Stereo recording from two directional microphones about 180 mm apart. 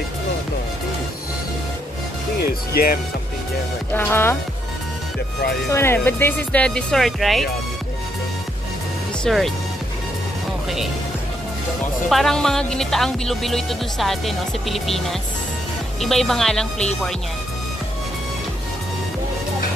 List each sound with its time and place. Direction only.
2.8 s speech: 60° left (ahead or behind)
3.9 s speech: 15° left (ahead or behind)
5.7 s speech: 15° left (ahead or behind)
9.2 s speech: centre (ahead or behind)
12.1 s speech: centre (ahead or behind)